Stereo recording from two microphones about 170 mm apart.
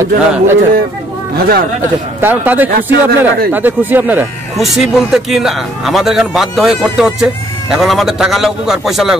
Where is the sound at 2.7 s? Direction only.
65° right (ahead or behind).